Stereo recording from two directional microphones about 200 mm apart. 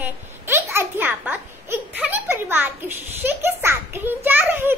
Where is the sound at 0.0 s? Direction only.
10° right (ahead or behind).